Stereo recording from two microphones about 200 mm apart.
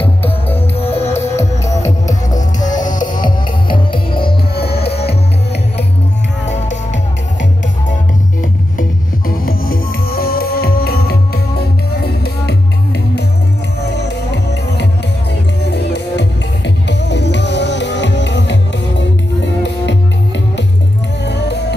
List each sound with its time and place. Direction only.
0.6 s music: 30° left (ahead or behind)
1.4 s music: 15° left (ahead or behind)
2.3 s music: 40° left (ahead or behind)
3.1 s music: 20° left (ahead or behind)
4.3 s music: 50° left (ahead or behind)
4.7 s music: 30° left (ahead or behind)
6.4 s music: 35° left (ahead or behind)
9.4 s music: 45° left (ahead or behind)
13.8 s music: 55° left (ahead or behind)